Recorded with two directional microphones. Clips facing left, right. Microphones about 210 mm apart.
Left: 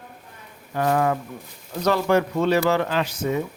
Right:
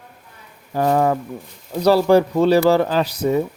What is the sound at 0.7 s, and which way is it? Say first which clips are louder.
Speech: right 4 dB; 30° right (ahead or behind).